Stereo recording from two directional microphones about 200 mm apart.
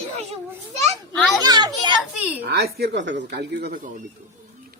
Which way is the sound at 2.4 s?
55° right (ahead or behind).